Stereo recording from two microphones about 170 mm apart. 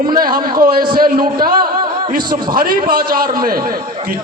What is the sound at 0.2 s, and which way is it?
A man's voice, 60° right (ahead or behind).